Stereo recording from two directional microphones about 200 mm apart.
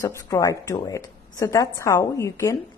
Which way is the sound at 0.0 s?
20° left (ahead or behind).